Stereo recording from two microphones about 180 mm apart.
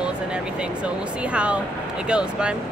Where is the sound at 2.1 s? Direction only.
5° right (ahead or behind).